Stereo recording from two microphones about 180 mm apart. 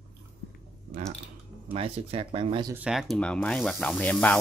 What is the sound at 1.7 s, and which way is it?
Speech, 30° right (ahead or behind).